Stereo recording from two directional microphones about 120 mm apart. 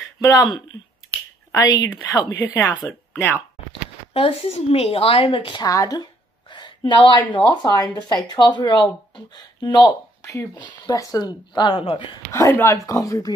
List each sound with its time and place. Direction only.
0.2 s a woman's voice: 30° left (ahead or behind)
4.1 s a woman's voice: 50° left (ahead or behind)
5.6 s speech: 30° left (ahead or behind)
6.5 s a sound: 40° left (ahead or behind)
7.6 s speech: 30° left (ahead or behind)
10.2 s a woman's voice: 25° left (ahead or behind); by 12.2 s 50° left (ahead or behind)
12.3 s a woman's voice: 25° left (ahead or behind)